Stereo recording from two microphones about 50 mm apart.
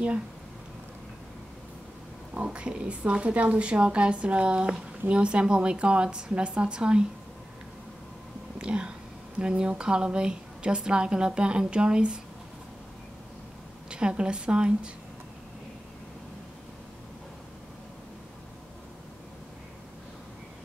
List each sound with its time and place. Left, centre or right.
2.3 s a woman's voice: right
8.5 s a woman's voice: right
13.8 s a woman's voice: centre